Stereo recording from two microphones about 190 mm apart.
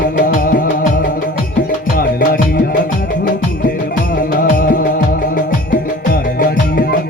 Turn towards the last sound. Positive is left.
turn(degrees=50)  # may be behind; listen again after turning